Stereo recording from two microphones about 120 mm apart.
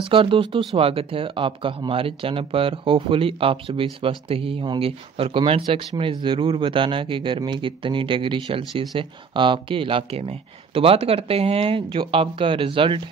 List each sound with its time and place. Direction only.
0.0 s speech: 45° right (ahead or behind)